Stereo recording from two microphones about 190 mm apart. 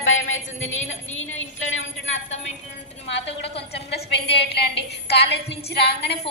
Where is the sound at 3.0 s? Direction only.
65° left (ahead or behind).